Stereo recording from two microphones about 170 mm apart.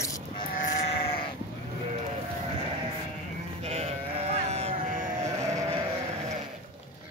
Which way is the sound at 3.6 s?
40° right (ahead or behind).